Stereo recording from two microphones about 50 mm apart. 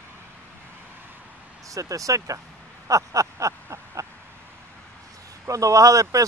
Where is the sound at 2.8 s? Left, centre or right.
Right.